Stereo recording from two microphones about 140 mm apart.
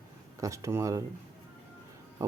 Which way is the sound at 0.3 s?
20° right (ahead or behind).